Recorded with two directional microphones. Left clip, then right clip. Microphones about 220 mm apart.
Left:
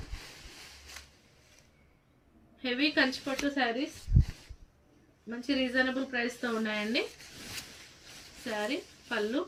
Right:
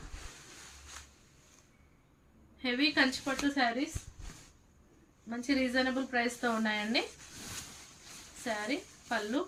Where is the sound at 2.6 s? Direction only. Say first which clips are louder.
Left 1 dB; 25° right (ahead or behind).